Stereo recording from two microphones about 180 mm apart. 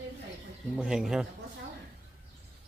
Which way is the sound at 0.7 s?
5° right (ahead or behind).